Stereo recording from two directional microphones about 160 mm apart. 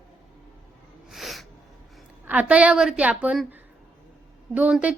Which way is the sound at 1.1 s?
Centre (ahead or behind).